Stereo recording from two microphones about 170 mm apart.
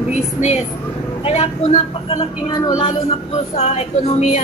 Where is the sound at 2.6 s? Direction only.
25° left (ahead or behind); by 4.4 s 40° left (ahead or behind).